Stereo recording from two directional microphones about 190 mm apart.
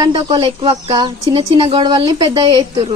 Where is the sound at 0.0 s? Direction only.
25° right (ahead or behind).